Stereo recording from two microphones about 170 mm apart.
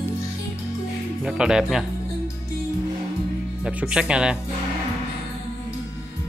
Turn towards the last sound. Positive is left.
turn(degrees=-5)  # may be behind; listen again after turning